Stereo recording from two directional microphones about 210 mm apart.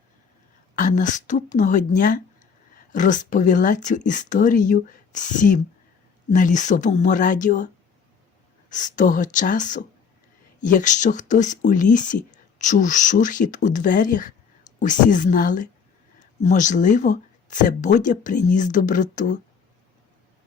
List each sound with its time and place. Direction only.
0.8 s speech: 40° left (ahead or behind)
8.7 s speech: 35° left (ahead or behind)